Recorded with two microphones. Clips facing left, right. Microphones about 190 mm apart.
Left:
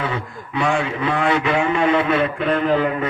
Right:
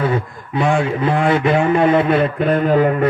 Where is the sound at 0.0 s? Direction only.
45° right (ahead or behind).